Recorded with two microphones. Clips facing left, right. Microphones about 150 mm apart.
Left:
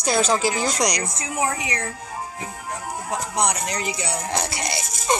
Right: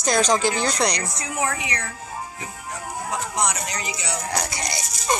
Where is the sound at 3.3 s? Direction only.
60° left (ahead or behind).